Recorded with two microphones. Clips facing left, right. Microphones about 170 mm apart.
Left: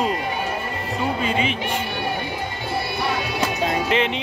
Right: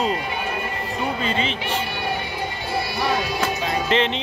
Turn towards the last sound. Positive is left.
turn(degrees=10)  # may be behind; listen again after turning